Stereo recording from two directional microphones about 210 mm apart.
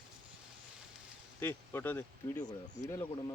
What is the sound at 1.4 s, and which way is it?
Speech, 10° left (ahead or behind).